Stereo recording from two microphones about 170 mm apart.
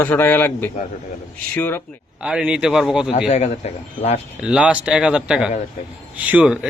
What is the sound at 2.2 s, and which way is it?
Speech, 5° right (ahead or behind).